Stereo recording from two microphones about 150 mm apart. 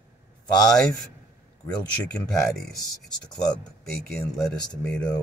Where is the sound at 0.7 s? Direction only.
5° left (ahead or behind).